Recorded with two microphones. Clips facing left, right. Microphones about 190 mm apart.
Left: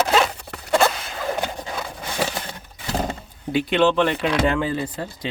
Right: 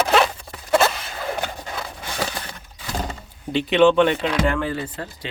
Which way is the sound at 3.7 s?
Centre (ahead or behind).